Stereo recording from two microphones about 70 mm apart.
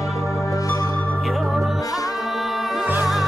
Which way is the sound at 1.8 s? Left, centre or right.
Left.